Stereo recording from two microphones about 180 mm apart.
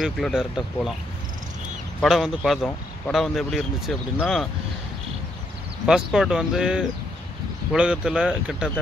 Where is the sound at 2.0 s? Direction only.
Centre (ahead or behind).